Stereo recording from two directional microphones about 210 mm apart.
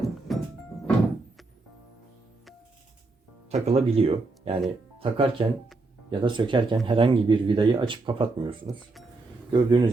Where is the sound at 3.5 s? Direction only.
30° right (ahead or behind).